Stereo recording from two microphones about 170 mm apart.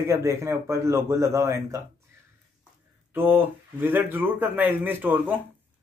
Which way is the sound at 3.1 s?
10° right (ahead or behind).